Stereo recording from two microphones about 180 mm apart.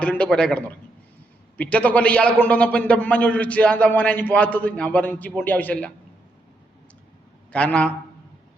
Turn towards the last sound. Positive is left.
turn(degrees=5)  # may be behind; listen again after turning